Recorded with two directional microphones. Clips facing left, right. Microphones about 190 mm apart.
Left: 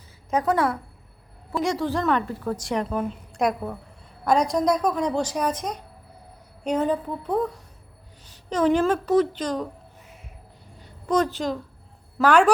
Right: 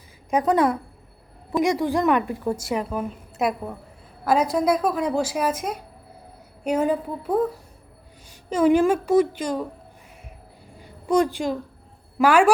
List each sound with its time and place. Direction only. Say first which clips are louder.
0.3 s a woman's voice: right 3 dB; 15° right (ahead or behind)
10.8 s a sound: right 2 dB; 10° right (ahead or behind)
12.1 s a woman's voice: right 1 dB; 10° right (ahead or behind)